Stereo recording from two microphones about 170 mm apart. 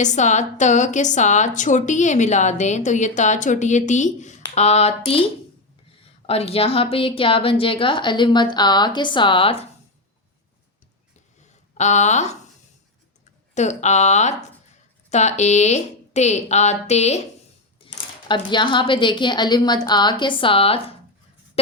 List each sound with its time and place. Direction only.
0.0 s a woman's voice: 45° left (ahead or behind)
6.2 s a woman's voice: 35° left (ahead or behind)
11.8 s a woman's voice: 45° left (ahead or behind)
13.5 s a woman's voice: 45° left (ahead or behind)
17.8 s speech: 25° left (ahead or behind)